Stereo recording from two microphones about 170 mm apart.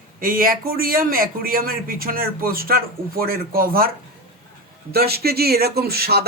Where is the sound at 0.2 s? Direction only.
55° right (ahead or behind).